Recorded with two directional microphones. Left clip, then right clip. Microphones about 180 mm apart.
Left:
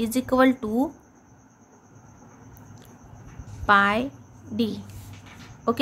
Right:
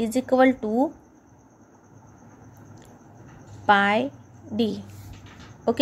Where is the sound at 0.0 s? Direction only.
5° right (ahead or behind).